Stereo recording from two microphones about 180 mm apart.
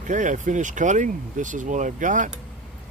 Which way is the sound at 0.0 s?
45° right (ahead or behind).